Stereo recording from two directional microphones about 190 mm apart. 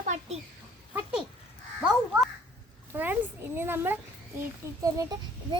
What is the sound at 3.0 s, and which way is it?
A child's voice, 10° right (ahead or behind).